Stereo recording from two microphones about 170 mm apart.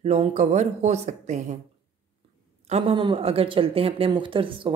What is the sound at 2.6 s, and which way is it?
Speech, 35° right (ahead or behind).